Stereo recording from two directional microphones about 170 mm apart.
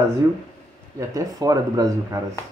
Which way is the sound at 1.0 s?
20° right (ahead or behind).